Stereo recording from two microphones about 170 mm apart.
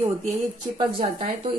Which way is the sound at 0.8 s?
35° right (ahead or behind).